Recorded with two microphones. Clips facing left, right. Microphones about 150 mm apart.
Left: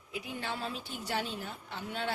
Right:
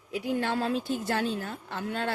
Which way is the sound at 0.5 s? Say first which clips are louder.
Right 11 dB; 45° right (ahead or behind).